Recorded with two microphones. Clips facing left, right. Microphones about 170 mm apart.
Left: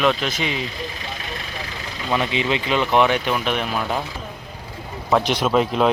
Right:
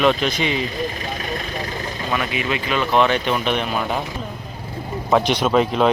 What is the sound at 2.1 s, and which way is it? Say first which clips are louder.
Speech: left 3 dB; 25° left (ahead or behind).